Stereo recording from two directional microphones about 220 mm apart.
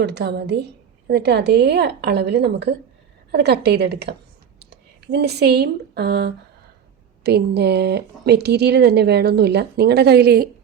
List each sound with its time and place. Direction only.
0.0 s speech: 50° right (ahead or behind)